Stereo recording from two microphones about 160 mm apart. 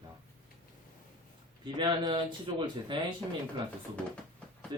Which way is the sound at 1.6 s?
30° right (ahead or behind).